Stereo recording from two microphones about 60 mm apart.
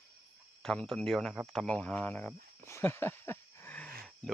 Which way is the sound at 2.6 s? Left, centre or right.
Left.